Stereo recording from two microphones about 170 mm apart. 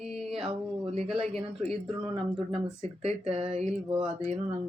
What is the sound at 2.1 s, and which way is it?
Speech, 30° right (ahead or behind).